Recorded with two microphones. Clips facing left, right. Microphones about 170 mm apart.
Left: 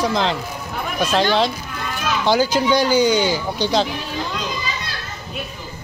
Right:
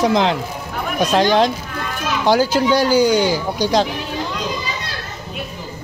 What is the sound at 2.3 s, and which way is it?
Speech, 5° right (ahead or behind).